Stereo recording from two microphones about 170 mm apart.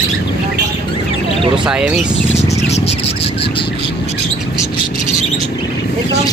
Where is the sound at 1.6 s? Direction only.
5° right (ahead or behind).